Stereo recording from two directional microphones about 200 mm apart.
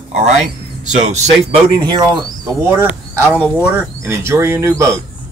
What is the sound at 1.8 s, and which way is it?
Speech, 20° right (ahead or behind).